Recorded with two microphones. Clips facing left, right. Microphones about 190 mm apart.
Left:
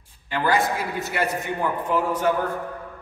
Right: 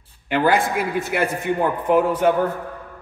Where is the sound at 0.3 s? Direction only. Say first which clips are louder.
Right 4 dB; 55° right (ahead or behind).